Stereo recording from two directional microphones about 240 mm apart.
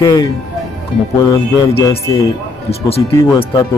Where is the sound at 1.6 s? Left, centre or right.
Centre.